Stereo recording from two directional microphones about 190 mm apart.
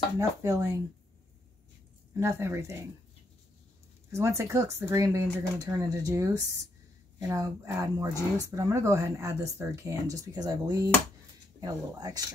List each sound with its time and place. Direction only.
0.2 s speech: 15° right (ahead or behind)
2.1 s speech: 15° right (ahead or behind)
4.1 s speech: 15° right (ahead or behind)